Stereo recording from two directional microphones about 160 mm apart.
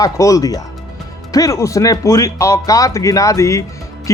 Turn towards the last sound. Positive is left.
turn(degrees=20)  # may be behind; listen again after turning